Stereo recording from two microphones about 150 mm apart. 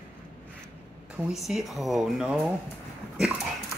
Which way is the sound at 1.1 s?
Centre (ahead or behind).